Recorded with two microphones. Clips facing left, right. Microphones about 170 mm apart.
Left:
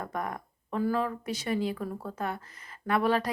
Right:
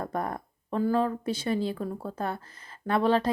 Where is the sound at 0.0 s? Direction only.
30° right (ahead or behind).